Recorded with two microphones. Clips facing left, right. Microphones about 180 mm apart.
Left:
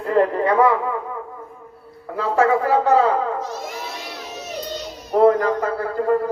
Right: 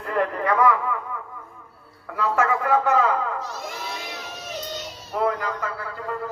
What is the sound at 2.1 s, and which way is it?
Speech, 30° left (ahead or behind).